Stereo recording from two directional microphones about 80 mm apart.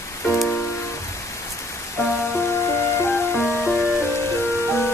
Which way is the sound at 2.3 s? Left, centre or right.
Left.